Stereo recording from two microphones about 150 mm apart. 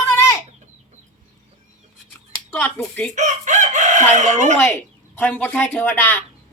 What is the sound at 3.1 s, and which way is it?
Chicken, 55° right (ahead or behind).